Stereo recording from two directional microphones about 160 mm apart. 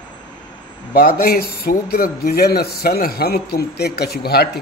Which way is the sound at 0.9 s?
65° left (ahead or behind).